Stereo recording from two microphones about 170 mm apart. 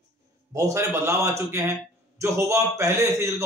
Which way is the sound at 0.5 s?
15° right (ahead or behind).